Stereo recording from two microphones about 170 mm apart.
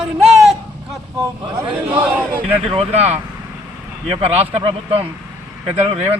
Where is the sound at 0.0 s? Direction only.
Centre (ahead or behind).